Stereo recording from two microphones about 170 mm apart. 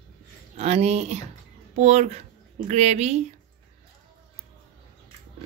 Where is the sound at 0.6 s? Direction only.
40° right (ahead or behind).